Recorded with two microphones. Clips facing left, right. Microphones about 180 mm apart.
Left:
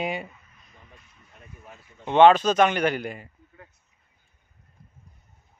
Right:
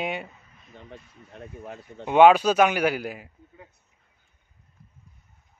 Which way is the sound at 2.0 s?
10° right (ahead or behind).